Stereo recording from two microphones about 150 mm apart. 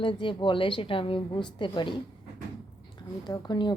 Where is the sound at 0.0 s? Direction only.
35° left (ahead or behind).